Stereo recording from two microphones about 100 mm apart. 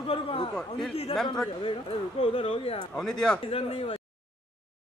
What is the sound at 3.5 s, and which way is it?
Speech, 75° left (ahead or behind).